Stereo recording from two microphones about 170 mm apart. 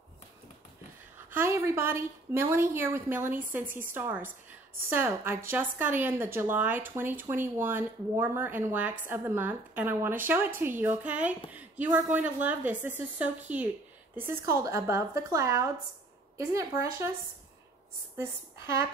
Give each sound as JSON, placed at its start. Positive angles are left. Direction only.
{"t": 1.1, "sound": "a woman's voice", "side_deg": -15}
{"t": 18.1, "sound": "a woman's voice", "side_deg": -15}